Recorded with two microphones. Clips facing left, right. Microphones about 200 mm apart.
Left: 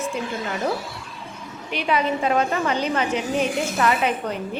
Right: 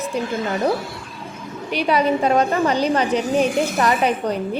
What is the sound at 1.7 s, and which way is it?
A woman's voice, 40° right (ahead or behind).